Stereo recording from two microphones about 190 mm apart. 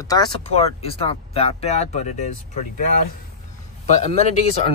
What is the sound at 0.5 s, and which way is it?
Speech, 30° left (ahead or behind).